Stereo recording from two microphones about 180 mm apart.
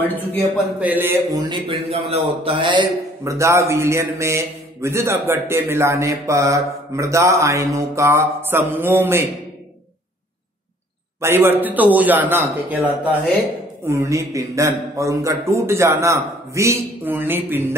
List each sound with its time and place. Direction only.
0.0 s speech: 10° left (ahead or behind)
0.7 s a man's voice: 10° right (ahead or behind)
11.1 s a man's voice: 15° right (ahead or behind)